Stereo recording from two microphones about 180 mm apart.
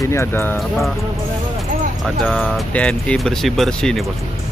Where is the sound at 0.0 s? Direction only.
15° left (ahead or behind).